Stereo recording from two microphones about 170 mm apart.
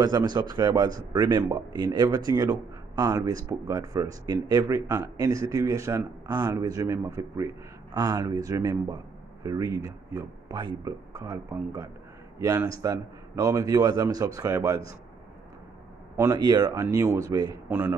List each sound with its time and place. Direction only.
0.0 s speech: 25° right (ahead or behind)
16.2 s speech: 20° right (ahead or behind)
17.6 s speech: 10° right (ahead or behind)